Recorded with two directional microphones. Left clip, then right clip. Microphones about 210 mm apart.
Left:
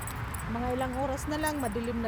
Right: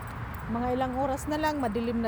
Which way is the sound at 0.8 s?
25° right (ahead or behind).